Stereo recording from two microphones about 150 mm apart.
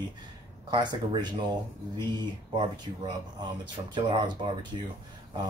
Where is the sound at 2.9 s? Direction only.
35° right (ahead or behind).